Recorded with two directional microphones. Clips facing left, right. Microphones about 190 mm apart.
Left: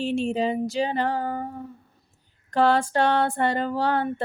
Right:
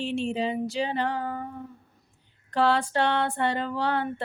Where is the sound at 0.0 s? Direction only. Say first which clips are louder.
Left 3 dB; 40° left (ahead or behind).